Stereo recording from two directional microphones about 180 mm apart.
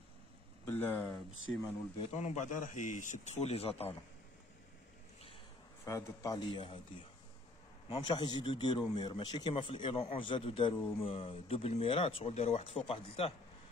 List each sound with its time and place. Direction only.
0.7 s speech: 10° left (ahead or behind)
1.5 s a man's voice: 35° left (ahead or behind)
5.9 s speech: 20° left (ahead or behind)
7.9 s a man's voice: 25° left (ahead or behind)